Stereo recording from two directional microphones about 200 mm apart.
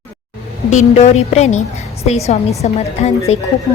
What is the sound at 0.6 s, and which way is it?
A woman's voice, 35° left (ahead or behind).